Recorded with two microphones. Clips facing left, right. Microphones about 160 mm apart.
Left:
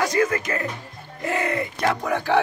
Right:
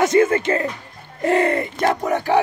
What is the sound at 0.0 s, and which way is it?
Speech, 25° right (ahead or behind).